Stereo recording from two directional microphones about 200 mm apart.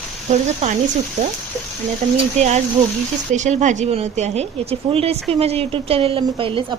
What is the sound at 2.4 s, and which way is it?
A woman's voice, 35° right (ahead or behind).